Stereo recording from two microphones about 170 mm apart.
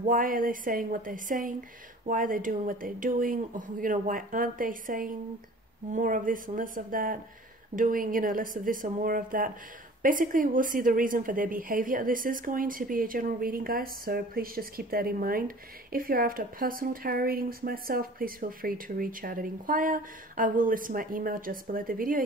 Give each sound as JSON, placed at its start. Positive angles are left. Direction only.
{"t": 0.0, "sound": "a woman's voice", "side_deg": -55}